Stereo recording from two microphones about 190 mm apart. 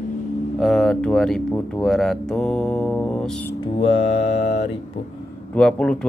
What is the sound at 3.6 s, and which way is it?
Mantra, 30° left (ahead or behind).